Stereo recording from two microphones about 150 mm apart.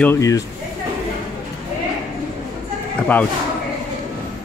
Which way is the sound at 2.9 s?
10° left (ahead or behind).